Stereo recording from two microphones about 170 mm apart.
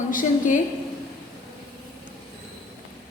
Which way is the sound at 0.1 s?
50° left (ahead or behind).